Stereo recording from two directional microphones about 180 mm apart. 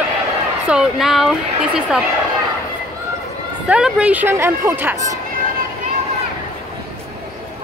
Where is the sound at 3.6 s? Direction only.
5° right (ahead or behind).